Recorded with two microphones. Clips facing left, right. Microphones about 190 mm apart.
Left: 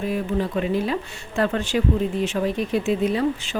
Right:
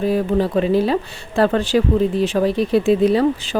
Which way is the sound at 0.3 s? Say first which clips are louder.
Right 5 dB; 35° right (ahead or behind).